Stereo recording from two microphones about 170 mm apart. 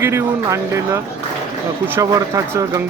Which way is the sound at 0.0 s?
15° right (ahead or behind).